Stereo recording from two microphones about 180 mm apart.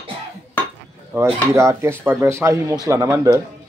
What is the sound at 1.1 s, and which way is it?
Speech, 15° right (ahead or behind).